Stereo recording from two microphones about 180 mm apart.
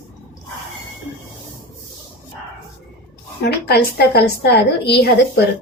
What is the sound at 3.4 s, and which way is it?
A woman's voice, 65° left (ahead or behind).